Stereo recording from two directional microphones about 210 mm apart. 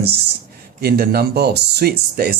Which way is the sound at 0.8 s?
45° right (ahead or behind).